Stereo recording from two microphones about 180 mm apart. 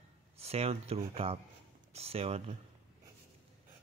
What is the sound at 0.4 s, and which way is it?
Speech, 35° right (ahead or behind).